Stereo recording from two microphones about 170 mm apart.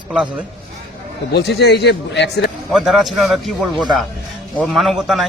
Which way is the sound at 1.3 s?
75° left (ahead or behind).